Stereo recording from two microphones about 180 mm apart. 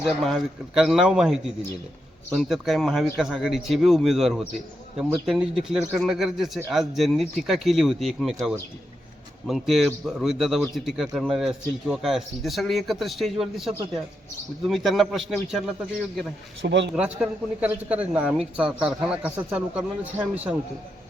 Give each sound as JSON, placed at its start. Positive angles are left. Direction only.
{"t": 0.2, "sound": "speech", "side_deg": 0}
{"t": 16.6, "sound": "speech", "side_deg": -80}
{"t": 16.9, "sound": "speech", "side_deg": -5}